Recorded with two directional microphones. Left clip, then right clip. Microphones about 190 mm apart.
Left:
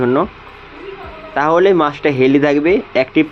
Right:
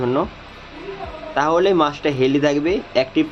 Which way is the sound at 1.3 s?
20° left (ahead or behind).